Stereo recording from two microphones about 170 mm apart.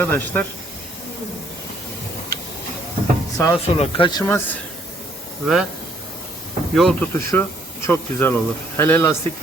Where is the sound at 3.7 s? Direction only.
30° left (ahead or behind).